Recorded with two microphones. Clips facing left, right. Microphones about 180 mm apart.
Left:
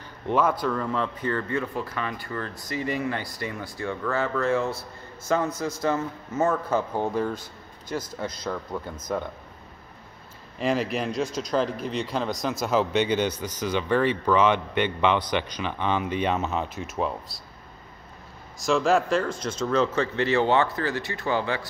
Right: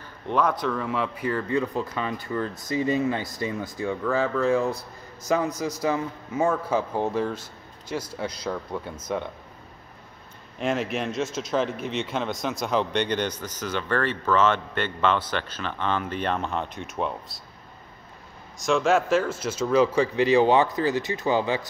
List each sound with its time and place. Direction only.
0.3 s speech: 5° left (ahead or behind); by 4.3 s 10° right (ahead or behind)
5.8 s speech: 10° right (ahead or behind)
8.5 s a man's voice: centre (ahead or behind)
10.6 s a man's voice: centre (ahead or behind)
18.6 s speech: centre (ahead or behind); by 21.6 s 15° right (ahead or behind)